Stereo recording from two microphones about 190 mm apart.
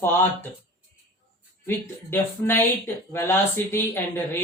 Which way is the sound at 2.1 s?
10° left (ahead or behind).